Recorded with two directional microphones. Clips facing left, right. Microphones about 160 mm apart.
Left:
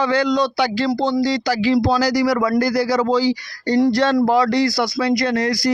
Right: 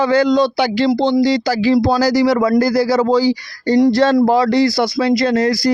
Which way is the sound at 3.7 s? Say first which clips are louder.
Right 3 dB; 15° right (ahead or behind).